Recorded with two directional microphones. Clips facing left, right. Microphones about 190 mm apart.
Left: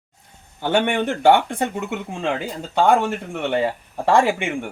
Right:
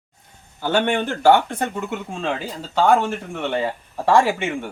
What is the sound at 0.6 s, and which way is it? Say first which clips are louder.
Speech: left 1 dB; 15° left (ahead or behind).